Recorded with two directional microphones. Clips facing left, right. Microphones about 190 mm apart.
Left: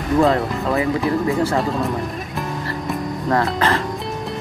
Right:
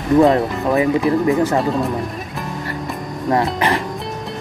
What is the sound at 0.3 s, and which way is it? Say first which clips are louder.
Speech: right 3 dB; 15° right (ahead or behind).